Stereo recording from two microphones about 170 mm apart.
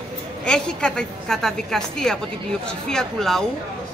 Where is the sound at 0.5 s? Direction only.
5° left (ahead or behind).